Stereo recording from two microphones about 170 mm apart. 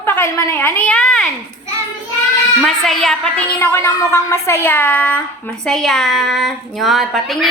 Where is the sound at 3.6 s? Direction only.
15° left (ahead or behind).